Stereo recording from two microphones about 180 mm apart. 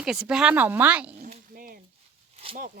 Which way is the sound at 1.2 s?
50° right (ahead or behind).